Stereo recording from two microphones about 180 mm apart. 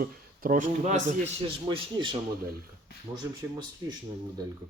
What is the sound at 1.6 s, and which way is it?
Speech, 25° right (ahead or behind).